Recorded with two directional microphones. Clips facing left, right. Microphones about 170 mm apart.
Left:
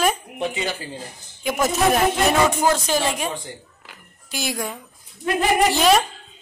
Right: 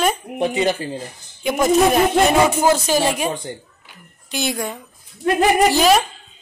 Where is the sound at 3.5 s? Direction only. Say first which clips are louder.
Right 6 dB; 30° right (ahead or behind).